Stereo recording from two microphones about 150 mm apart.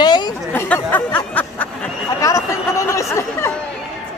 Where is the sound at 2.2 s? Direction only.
20° left (ahead or behind).